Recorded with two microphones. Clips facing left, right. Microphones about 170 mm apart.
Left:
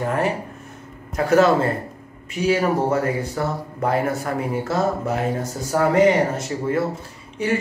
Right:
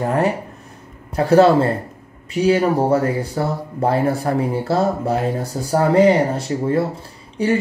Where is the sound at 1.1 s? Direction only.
35° right (ahead or behind).